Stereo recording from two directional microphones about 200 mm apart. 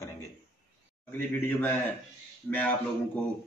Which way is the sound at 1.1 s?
10° left (ahead or behind).